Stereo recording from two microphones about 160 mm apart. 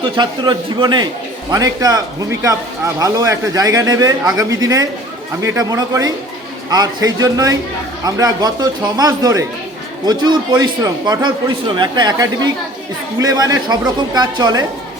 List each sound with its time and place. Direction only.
0.0 s a man's voice: 30° right (ahead or behind)